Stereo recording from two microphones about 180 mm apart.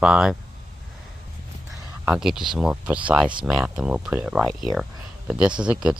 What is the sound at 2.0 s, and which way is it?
Speech, 5° right (ahead or behind).